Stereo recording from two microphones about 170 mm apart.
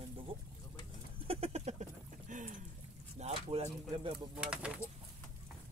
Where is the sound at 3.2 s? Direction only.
35° right (ahead or behind).